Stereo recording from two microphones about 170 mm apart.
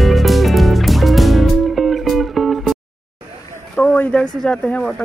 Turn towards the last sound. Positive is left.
turn(degrees=5)  # may be behind; listen again after turning